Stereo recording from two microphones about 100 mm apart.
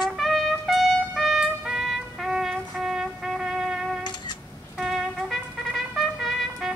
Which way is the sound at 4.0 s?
50° left (ahead or behind).